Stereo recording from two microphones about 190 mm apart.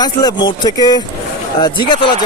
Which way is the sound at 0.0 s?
20° left (ahead or behind).